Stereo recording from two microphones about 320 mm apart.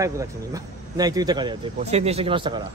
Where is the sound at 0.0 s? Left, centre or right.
Centre.